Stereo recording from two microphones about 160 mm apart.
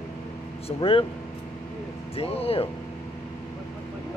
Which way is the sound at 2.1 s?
40° left (ahead or behind).